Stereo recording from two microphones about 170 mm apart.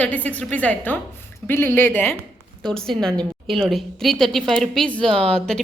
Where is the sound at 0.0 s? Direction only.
10° left (ahead or behind).